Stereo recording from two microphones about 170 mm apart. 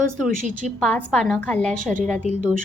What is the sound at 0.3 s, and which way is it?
Speech, 50° right (ahead or behind).